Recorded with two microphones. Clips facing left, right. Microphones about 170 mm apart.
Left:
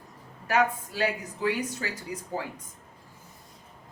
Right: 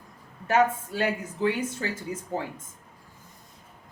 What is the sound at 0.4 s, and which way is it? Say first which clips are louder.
Speech: right 3 dB; 25° right (ahead or behind).